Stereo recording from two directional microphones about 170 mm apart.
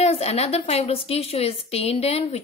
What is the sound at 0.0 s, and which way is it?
A woman's voice, 40° left (ahead or behind).